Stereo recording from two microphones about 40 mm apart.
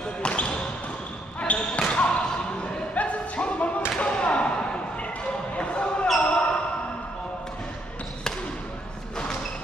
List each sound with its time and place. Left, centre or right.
0.2 s basketball bounce: left
1.9 s basketball bounce: left
2.2 s a sound: left
2.9 s music: left
4.0 s thump: left
5.6 s basketball bounce: left